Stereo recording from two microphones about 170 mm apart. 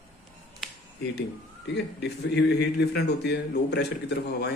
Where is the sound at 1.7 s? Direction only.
85° left.